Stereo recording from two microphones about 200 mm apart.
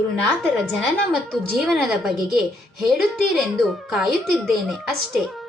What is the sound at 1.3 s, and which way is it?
A woman's voice, centre (ahead or behind).